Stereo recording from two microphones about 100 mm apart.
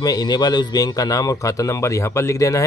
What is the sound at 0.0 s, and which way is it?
A man's voice, 40° left (ahead or behind).